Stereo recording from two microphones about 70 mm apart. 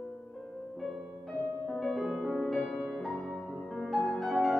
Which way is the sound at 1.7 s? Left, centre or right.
Centre.